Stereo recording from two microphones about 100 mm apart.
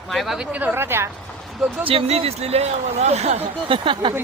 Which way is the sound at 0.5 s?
20° right (ahead or behind).